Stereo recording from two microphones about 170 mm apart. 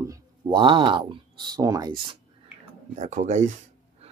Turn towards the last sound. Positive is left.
turn(degrees=-40)  # may be behind; listen again after turning